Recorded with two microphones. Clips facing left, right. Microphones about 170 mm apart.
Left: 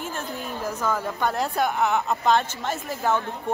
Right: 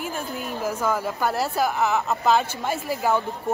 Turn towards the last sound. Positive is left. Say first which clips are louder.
# right 2 dB
turn(degrees=-10)  # may be behind; listen again after turning